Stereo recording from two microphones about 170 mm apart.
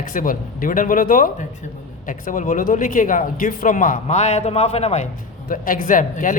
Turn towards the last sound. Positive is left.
turn(degrees=50)  # may be behind; listen again after turning